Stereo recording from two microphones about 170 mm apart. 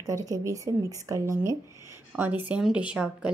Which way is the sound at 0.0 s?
20° right (ahead or behind).